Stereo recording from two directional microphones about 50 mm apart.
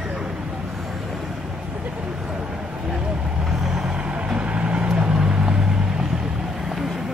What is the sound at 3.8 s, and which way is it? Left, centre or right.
Vehicle, centre.